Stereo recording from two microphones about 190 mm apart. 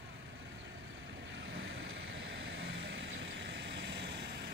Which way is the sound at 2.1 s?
70° right (ahead or behind).